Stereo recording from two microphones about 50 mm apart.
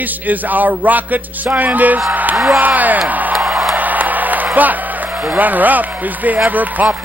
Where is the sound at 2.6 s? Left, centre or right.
Right.